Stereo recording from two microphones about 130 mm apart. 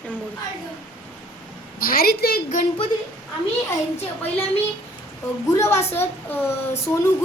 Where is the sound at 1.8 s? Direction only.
90° left.